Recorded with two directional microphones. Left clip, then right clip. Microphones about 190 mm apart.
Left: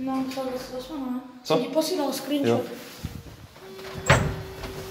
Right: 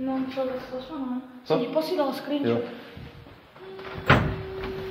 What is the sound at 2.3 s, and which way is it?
Speech, 5° left (ahead or behind).